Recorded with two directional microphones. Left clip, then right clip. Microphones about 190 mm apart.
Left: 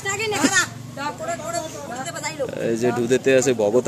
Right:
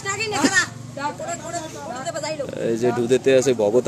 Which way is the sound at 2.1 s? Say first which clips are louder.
Right 6 dB; 25° right (ahead or behind).